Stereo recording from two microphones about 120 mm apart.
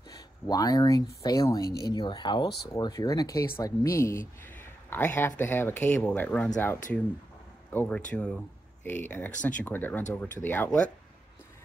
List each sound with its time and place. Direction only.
0.5 s speech: 30° left (ahead or behind); by 10.9 s 15° left (ahead or behind)